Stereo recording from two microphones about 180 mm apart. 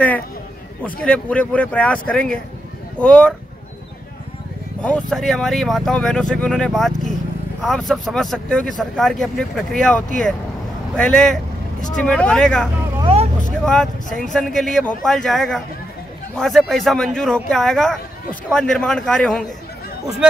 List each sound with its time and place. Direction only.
0.8 s speech: 5° left (ahead or behind)
4.8 s speech: 5° left (ahead or behind)
13.0 s vehicle: 35° right (ahead or behind)
13.7 s speech: 5° left (ahead or behind)